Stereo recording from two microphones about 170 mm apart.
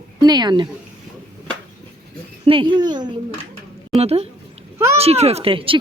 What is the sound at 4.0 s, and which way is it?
Speech, 35° right (ahead or behind).